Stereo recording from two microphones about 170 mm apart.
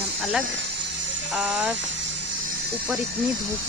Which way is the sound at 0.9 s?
90° right.